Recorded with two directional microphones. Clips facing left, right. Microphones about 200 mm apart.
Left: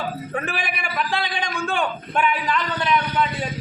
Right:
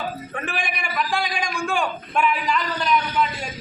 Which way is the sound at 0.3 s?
5° left (ahead or behind).